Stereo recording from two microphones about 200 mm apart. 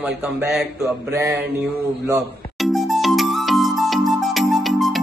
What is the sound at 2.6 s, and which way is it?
Music, centre (ahead or behind).